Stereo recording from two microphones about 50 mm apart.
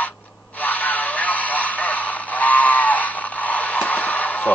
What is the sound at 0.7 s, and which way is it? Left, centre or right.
Radio, left.